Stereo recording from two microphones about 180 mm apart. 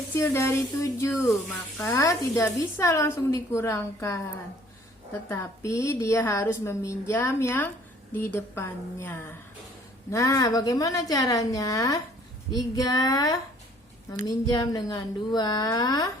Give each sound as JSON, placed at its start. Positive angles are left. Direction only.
{"t": 0.2, "sound": "a woman's voice", "side_deg": 15}
{"t": 5.3, "sound": "a woman's voice", "side_deg": 15}